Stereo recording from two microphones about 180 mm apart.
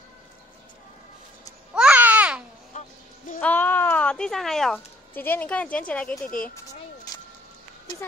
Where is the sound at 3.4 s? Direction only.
10° left (ahead or behind).